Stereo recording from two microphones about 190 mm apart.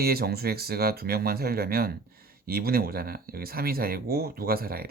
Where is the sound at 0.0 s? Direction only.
55° right (ahead or behind).